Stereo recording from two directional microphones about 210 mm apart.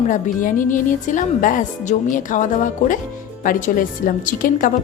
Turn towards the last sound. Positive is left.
turn(degrees=40)  # may be behind; listen again after turning